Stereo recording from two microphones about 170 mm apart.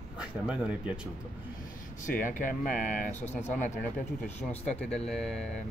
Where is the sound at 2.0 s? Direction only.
50° left (ahead or behind).